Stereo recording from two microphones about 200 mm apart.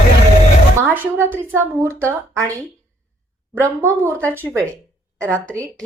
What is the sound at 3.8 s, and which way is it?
Speech, 15° right (ahead or behind).